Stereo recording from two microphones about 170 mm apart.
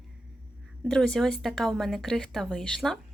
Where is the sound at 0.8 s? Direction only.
5° left (ahead or behind).